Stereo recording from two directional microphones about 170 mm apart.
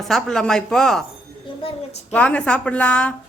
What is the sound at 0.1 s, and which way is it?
Speech, 5° left (ahead or behind).